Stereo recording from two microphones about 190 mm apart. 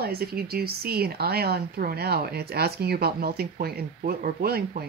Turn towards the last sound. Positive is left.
turn(degrees=-55)  # may be behind; listen again after turning